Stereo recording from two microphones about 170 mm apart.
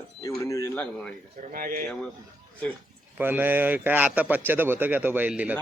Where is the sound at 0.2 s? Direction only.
20° left (ahead or behind).